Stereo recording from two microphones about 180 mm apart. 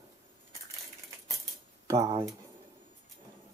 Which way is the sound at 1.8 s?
20° right (ahead or behind).